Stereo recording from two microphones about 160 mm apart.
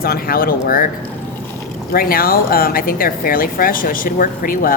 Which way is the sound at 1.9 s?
65° left (ahead or behind).